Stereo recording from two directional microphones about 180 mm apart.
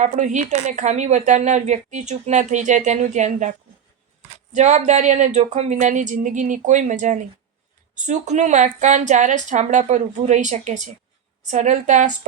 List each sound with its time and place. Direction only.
0.0 s a woman's voice: 40° right (ahead or behind)
4.5 s a woman's voice: 40° right (ahead or behind)